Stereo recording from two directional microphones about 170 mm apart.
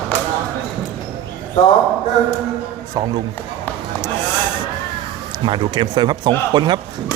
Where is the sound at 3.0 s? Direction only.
25° right (ahead or behind).